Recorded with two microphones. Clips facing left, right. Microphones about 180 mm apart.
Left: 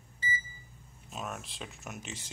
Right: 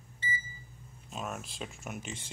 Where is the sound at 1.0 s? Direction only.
Centre (ahead or behind).